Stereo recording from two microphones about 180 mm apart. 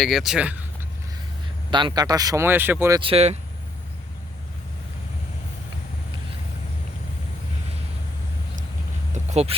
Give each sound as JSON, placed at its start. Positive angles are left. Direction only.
{"t": 0.0, "sound": "speech", "side_deg": 0}
{"t": 1.7, "sound": "speech", "side_deg": -25}
{"t": 3.0, "sound": "speech", "side_deg": -35}
{"t": 9.1, "sound": "a sound", "side_deg": -35}